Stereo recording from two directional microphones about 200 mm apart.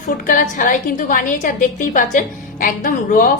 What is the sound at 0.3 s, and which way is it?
A woman's voice, 40° left (ahead or behind).